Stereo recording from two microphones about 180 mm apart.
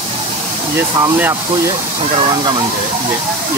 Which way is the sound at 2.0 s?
30° right (ahead or behind).